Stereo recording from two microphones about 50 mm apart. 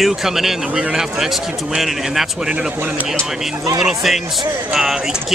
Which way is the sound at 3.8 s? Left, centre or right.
Centre.